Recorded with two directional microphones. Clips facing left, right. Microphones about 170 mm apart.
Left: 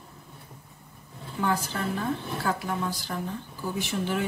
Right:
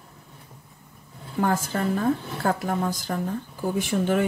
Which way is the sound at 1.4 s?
50° right (ahead or behind).